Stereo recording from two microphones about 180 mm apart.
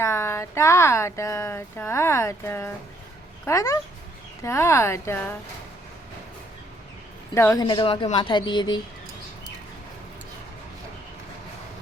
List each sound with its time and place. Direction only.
0.0 s speech: 15° left (ahead or behind)
7.3 s speech: 15° left (ahead or behind)